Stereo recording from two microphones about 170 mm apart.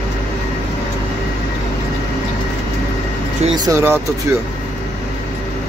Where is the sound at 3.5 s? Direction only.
20° right (ahead or behind).